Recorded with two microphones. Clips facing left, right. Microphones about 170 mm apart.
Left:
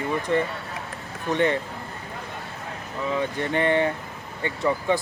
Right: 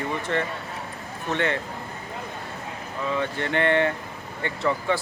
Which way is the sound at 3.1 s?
15° left (ahead or behind).